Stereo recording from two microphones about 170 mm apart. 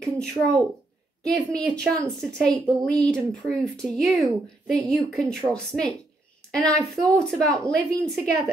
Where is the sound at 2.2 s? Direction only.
5° left (ahead or behind).